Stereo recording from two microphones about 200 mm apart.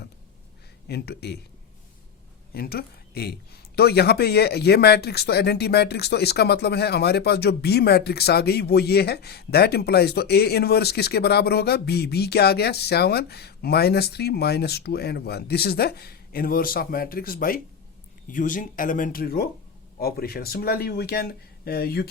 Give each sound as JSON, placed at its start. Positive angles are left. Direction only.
{"t": 0.9, "sound": "speech", "side_deg": 55}
{"t": 2.5, "sound": "speech", "side_deg": 50}